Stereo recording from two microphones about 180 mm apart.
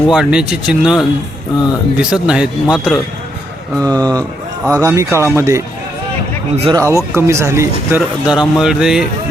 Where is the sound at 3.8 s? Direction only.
20° right (ahead or behind).